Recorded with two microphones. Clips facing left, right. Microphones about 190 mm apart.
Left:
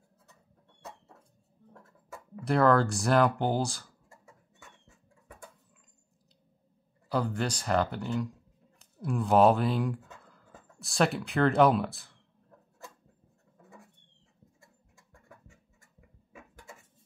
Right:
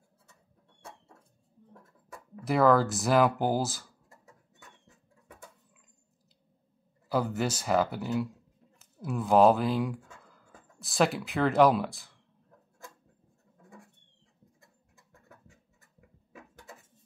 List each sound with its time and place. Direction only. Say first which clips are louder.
2.4 s speech: right 1 dB; centre (ahead or behind)
7.1 s speech: right 1 dB; 5° right (ahead or behind)
16.3 s a sound: right 1 dB; 35° right (ahead or behind)